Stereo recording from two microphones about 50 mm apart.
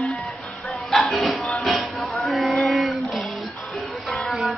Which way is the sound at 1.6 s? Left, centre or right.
Centre.